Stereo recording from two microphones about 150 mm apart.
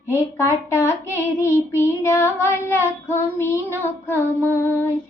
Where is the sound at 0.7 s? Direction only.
20° left (ahead or behind).